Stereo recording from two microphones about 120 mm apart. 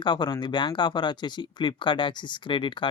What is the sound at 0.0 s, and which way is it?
Speech, 40° left (ahead or behind).